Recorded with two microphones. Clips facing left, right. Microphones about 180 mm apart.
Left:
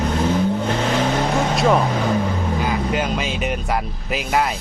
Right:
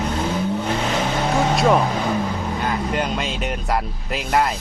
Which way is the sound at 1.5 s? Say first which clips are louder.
Even; centre (ahead or behind).